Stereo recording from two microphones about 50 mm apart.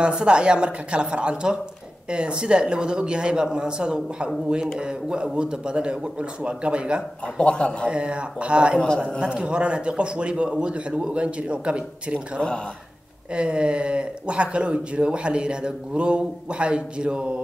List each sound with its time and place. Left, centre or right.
0.0 s speech: centre
7.3 s a man's voice: centre
7.9 s speech: centre
8.7 s a man's voice: centre
9.2 s speech: right
13.3 s speech: right